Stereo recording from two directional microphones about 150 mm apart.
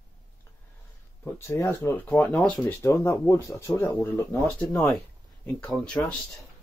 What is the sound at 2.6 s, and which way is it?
Speech, 15° left (ahead or behind).